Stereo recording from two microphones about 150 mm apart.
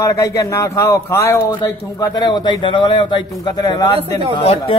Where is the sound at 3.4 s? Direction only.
25° left (ahead or behind).